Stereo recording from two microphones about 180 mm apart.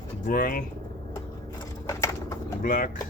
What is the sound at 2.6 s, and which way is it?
Speech, 50° left (ahead or behind).